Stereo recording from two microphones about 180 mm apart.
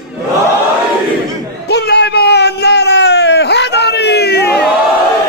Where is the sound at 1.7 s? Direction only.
65° left (ahead or behind).